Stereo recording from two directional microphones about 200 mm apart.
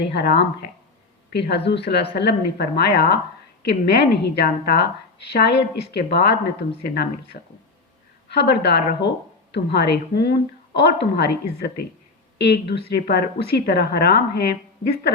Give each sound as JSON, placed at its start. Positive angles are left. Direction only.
{"t": 0.0, "sound": "a woman's voice", "side_deg": 55}